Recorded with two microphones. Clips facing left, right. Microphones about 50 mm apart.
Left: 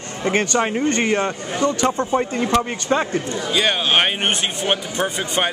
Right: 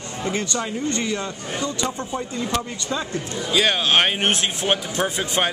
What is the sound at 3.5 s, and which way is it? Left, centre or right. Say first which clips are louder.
A man's voice: even; centre.